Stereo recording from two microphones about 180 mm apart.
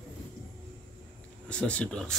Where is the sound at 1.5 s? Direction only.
5° left (ahead or behind).